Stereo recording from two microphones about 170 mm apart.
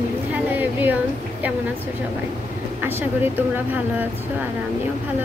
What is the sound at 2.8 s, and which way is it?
A woman's voice, 10° right (ahead or behind).